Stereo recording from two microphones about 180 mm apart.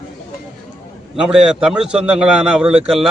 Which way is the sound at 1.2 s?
5° right (ahead or behind).